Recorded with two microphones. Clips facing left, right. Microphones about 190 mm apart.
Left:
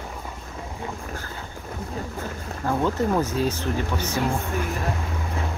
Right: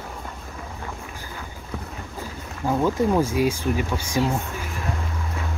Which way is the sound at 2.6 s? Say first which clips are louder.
Right 2 dB; 10° right (ahead or behind).